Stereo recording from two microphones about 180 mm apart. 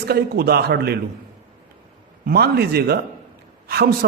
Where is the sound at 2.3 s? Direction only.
60° right (ahead or behind).